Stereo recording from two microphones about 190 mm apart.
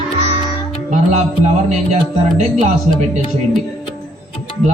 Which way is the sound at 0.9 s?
40° right (ahead or behind).